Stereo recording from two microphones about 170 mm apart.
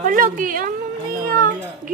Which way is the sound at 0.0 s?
50° right (ahead or behind).